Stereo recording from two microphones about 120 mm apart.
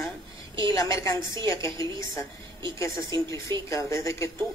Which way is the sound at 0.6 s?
25° left (ahead or behind).